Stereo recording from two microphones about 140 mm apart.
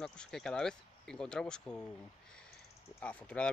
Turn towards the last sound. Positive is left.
turn(degrees=10)  # may be behind; listen again after turning